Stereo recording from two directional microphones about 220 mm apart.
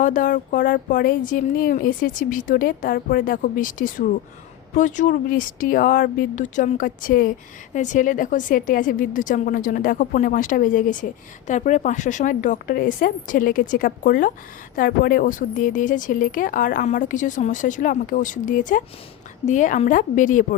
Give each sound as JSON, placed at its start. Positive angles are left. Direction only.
{"t": 0.0, "sound": "speech", "side_deg": 35}